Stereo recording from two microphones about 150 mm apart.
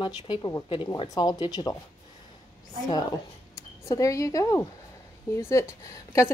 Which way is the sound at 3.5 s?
20° left (ahead or behind).